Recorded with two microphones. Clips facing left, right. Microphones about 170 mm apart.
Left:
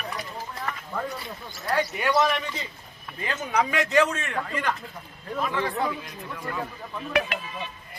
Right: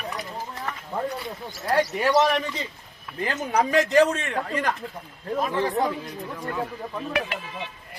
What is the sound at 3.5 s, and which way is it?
Speech, 40° right (ahead or behind).